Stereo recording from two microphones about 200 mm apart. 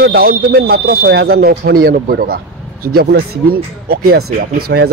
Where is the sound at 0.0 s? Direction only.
50° right (ahead or behind).